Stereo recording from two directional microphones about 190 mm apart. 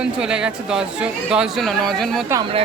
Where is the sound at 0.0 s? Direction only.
5° right (ahead or behind).